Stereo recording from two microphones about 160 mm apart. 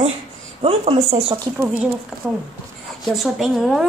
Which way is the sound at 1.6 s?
10° right (ahead or behind).